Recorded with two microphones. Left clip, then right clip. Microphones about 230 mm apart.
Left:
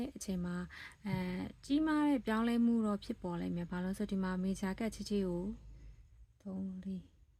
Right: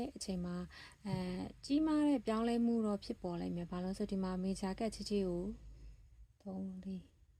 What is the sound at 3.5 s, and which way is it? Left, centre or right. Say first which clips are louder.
Speech: left 1 dB; centre.